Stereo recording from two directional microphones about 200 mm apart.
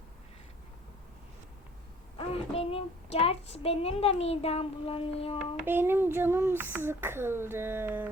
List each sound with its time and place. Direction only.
2.1 s speech: 30° left (ahead or behind)
5.6 s a child's voice: 10° right (ahead or behind)